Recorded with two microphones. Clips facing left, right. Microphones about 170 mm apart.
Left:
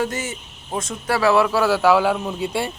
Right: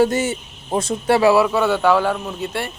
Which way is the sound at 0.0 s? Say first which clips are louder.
Right 8 dB; 30° right (ahead or behind).